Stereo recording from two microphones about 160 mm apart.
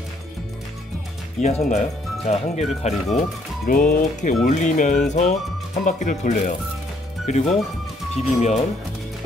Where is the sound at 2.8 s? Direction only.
45° left (ahead or behind).